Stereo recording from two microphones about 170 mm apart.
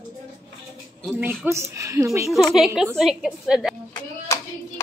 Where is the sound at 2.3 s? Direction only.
Centre (ahead or behind).